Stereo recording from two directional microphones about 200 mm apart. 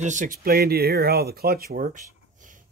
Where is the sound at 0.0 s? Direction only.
40° right (ahead or behind).